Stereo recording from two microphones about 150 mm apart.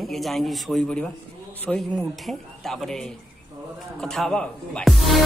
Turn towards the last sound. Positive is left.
turn(degrees=0)  # may be behind; listen again after turning